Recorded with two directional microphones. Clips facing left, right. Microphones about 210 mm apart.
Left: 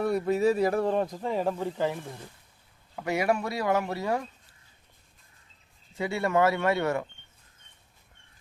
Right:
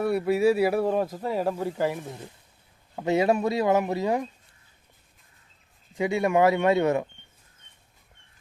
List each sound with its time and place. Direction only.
0.0 s speech: 10° right (ahead or behind)
6.0 s speech: 15° right (ahead or behind)